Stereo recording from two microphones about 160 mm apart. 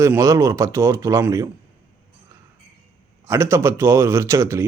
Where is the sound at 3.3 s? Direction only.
15° right (ahead or behind).